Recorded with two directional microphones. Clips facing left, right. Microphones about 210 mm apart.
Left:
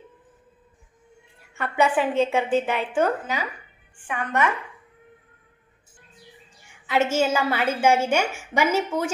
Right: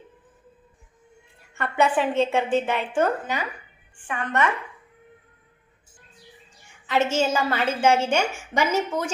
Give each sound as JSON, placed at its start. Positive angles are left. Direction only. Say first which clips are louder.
{"t": 1.5, "sound": "a woman's voice", "louder": "even", "side_deg": 10}
{"t": 6.9, "sound": "a woman's voice", "louder": "left 1 dB", "side_deg": 10}